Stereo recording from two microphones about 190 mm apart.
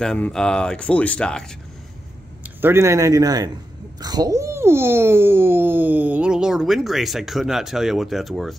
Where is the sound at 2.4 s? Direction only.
10° right (ahead or behind).